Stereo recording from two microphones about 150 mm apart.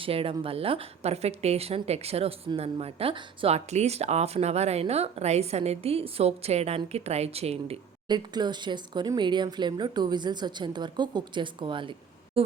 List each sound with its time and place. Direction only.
0.0 s a woman's voice: 40° right (ahead or behind)
8.0 s speech: 30° right (ahead or behind)